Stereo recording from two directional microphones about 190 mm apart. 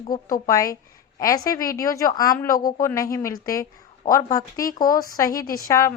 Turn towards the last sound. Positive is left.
turn(degrees=15)  # may be behind; listen again after turning